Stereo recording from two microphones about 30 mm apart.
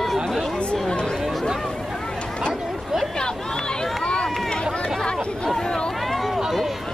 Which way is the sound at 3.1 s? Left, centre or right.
Left.